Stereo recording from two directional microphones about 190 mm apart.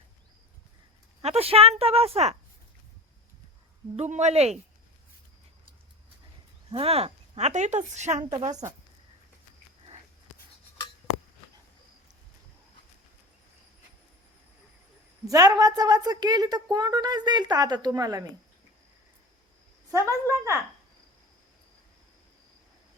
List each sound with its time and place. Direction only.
1.2 s a woman's voice: 35° right (ahead or behind)
3.9 s a woman's voice: 35° right (ahead or behind)
6.7 s a woman's voice: 30° right (ahead or behind)
8.3 s a woman's voice: 25° right (ahead or behind)
15.3 s a woman's voice: 20° right (ahead or behind)
19.9 s a woman's voice: 15° right (ahead or behind)